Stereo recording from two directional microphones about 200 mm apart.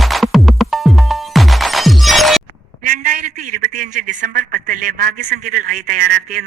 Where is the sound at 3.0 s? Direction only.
40° right (ahead or behind).